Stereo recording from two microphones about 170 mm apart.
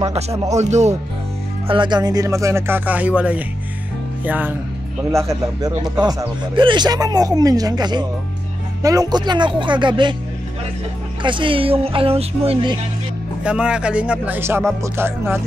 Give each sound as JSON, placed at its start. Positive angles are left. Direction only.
{"t": 0.1, "sound": "speech", "side_deg": -35}
{"t": 1.7, "sound": "speech", "side_deg": -25}
{"t": 11.2, "sound": "speech", "side_deg": -30}
{"t": 13.4, "sound": "speech", "side_deg": -5}